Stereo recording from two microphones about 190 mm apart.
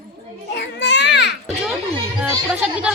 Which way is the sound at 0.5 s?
70° left (ahead or behind).